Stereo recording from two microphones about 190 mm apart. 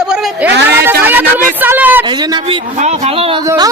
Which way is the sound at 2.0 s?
20° right (ahead or behind).